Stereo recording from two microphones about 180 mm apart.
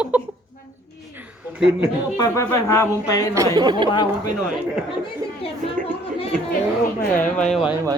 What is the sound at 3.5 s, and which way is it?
Speech, 25° right (ahead or behind).